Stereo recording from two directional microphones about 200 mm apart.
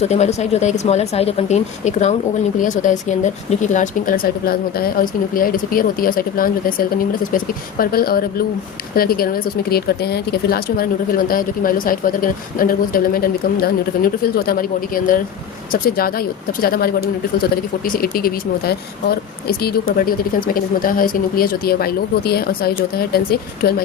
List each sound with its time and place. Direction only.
0.0 s speech: 35° left (ahead or behind); by 23.7 s 50° left (ahead or behind)